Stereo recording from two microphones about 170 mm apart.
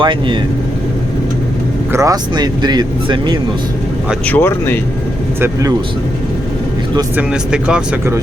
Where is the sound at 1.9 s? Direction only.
20° right (ahead or behind).